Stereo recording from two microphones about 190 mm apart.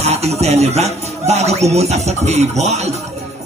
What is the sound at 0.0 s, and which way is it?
A man's voice, 35° right (ahead or behind).